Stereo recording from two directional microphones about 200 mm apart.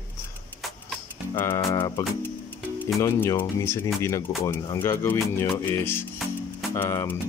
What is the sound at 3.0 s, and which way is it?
Speech, 15° left (ahead or behind).